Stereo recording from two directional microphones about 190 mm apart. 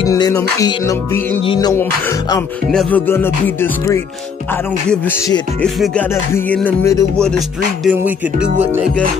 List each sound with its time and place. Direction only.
0.0 s music: 20° left (ahead or behind)
2.7 s music: 5° left (ahead or behind)
5.6 s music: 5° left (ahead or behind)
7.2 s music: centre (ahead or behind)